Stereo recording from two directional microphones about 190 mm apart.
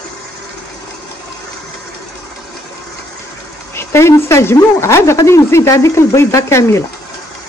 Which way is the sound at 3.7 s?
15° left (ahead or behind).